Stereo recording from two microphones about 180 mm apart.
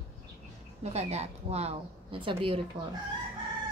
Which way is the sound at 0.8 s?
35° right (ahead or behind).